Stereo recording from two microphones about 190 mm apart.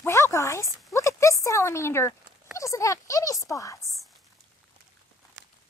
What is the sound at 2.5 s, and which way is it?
A woman's voice, 15° left (ahead or behind).